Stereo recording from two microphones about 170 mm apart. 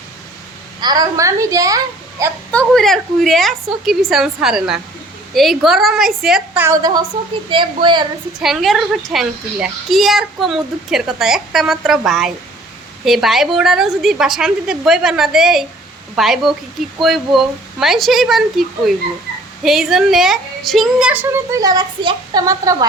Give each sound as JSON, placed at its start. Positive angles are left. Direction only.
{"t": 0.8, "sound": "a child's voice", "side_deg": -25}
{"t": 2.5, "sound": "a child's voice", "side_deg": 5}
{"t": 7.5, "sound": "a child's voice", "side_deg": -30}
{"t": 8.4, "sound": "a child's voice", "side_deg": 0}